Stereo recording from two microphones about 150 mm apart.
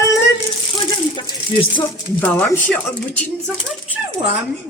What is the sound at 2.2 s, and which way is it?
Speech, 10° left (ahead or behind).